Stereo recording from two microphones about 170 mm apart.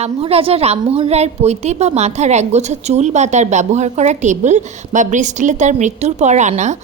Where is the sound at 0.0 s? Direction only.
35° right (ahead or behind).